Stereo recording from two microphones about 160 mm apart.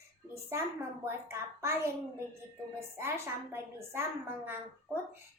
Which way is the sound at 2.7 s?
15° right (ahead or behind).